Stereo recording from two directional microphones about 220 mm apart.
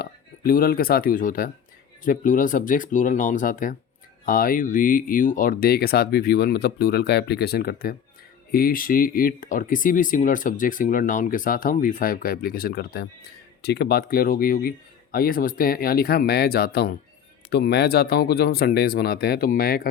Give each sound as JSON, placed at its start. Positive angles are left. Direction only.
{"t": 0.0, "sound": "speech", "side_deg": 40}